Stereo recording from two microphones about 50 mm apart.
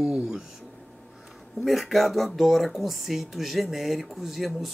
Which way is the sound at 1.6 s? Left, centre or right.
Centre.